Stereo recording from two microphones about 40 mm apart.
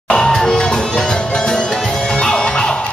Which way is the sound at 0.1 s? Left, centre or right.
Centre.